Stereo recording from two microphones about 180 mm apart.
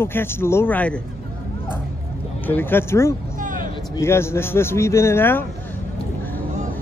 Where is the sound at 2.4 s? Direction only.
10° left (ahead or behind).